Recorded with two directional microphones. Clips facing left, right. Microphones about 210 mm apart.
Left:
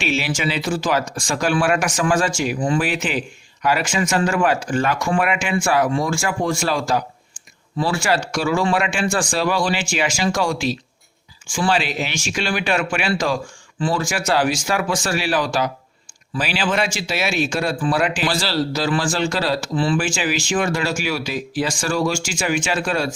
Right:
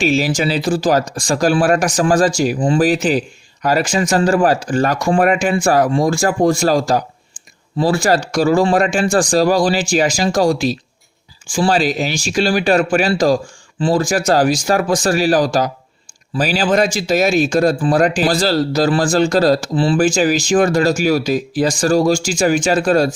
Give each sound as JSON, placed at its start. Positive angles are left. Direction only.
{"t": 0.0, "sound": "speech", "side_deg": -40}